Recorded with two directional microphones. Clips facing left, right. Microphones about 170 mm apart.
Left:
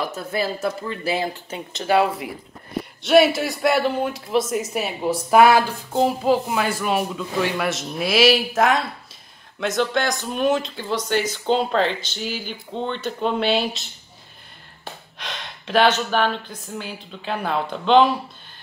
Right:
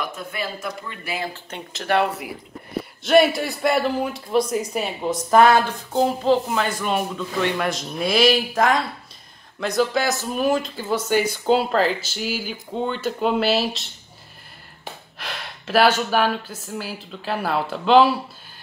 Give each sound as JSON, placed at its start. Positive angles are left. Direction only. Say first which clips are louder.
{"t": 0.0, "sound": "speech", "louder": "left 4 dB", "side_deg": 30}
{"t": 1.7, "sound": "speech", "louder": "left 2 dB", "side_deg": 0}
{"t": 14.9, "sound": "speech", "louder": "even", "side_deg": -5}